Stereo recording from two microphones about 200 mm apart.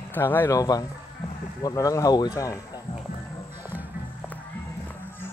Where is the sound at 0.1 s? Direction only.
10° left (ahead or behind).